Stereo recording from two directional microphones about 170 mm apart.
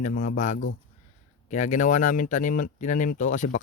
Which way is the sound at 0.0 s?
50° left (ahead or behind).